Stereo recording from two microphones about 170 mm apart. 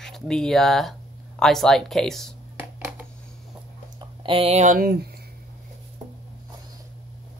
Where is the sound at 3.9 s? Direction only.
30° right (ahead or behind); by 5.0 s 60° right (ahead or behind).